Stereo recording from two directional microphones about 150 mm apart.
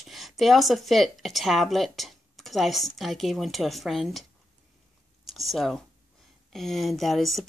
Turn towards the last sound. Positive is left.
turn(degrees=0)  # may be behind; listen again after turning